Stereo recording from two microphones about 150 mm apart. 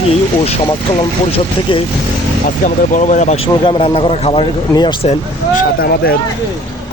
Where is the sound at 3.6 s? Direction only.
40° left (ahead or behind).